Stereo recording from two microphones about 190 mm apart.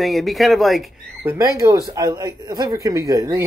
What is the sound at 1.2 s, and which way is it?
Speech, 15° right (ahead or behind).